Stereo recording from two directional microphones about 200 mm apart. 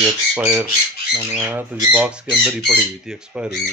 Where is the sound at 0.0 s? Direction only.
10° right (ahead or behind).